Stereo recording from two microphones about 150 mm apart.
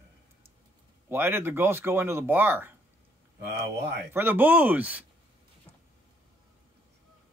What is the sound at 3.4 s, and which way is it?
Speech, 90° right.